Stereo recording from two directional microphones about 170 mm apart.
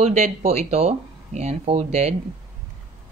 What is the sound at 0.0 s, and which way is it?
Speech, 40° right (ahead or behind).